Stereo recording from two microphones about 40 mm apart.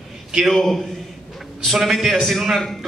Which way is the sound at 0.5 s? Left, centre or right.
Centre.